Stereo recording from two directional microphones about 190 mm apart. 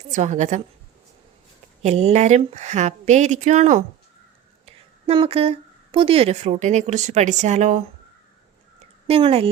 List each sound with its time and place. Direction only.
0.1 s speech: 40° right (ahead or behind)
1.8 s speech: 35° right (ahead or behind)
9.0 s speech: 30° right (ahead or behind)